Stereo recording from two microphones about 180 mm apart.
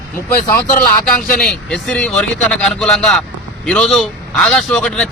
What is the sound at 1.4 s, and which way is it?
A man's voice, 5° left (ahead or behind).